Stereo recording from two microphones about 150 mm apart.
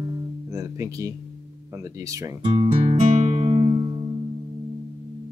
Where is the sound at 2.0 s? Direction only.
20° right (ahead or behind).